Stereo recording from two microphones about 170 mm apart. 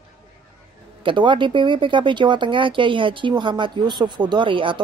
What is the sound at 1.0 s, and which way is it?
Speech, 30° right (ahead or behind).